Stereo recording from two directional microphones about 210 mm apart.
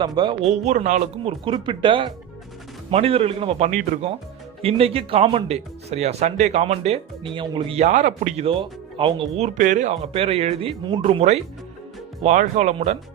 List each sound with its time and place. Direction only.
0.0 s speech: 20° right (ahead or behind)